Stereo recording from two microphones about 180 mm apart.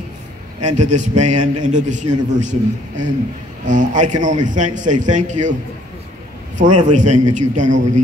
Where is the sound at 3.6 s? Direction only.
45° right (ahead or behind).